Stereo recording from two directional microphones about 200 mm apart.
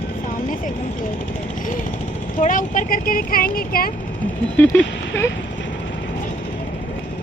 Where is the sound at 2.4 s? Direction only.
40° left (ahead or behind).